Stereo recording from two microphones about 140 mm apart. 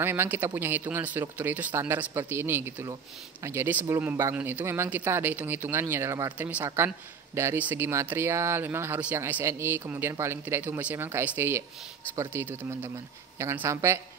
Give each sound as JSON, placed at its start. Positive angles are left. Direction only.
{"t": 0.0, "sound": "speech", "side_deg": -15}